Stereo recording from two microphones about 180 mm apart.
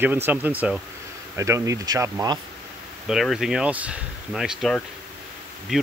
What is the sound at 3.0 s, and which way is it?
Speech, centre (ahead or behind).